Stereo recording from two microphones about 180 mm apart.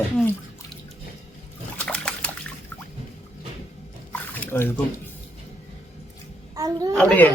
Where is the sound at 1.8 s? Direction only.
5° left (ahead or behind).